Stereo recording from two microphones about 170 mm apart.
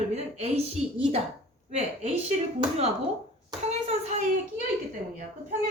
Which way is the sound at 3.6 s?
40° right (ahead or behind).